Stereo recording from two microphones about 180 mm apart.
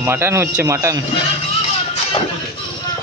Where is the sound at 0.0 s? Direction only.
15° right (ahead or behind).